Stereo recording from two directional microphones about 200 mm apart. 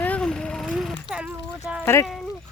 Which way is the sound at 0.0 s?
5° left (ahead or behind).